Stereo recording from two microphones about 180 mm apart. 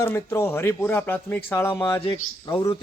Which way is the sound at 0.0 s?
15° left (ahead or behind).